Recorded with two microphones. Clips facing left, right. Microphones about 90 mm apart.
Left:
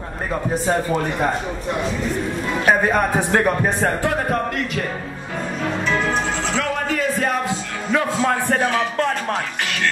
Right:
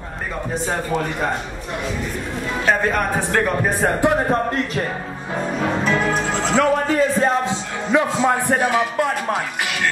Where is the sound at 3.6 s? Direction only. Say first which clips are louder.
Right 2 dB; 10° right (ahead or behind).